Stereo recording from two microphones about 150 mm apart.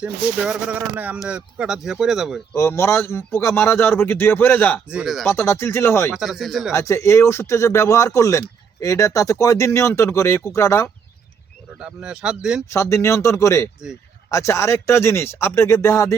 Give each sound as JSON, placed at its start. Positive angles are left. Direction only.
{"t": 0.0, "sound": "speech", "side_deg": -5}
{"t": 2.6, "sound": "a man's voice", "side_deg": 20}
{"t": 4.9, "sound": "speech", "side_deg": -5}
{"t": 5.3, "sound": "a man's voice", "side_deg": 15}
{"t": 6.1, "sound": "speech", "side_deg": 0}
{"t": 6.7, "sound": "speech", "side_deg": 20}
{"t": 11.8, "sound": "speech", "side_deg": -5}
{"t": 12.7, "sound": "speech", "side_deg": 20}